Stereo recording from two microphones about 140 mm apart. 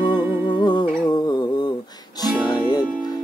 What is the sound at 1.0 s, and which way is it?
Humming, 30° left (ahead or behind).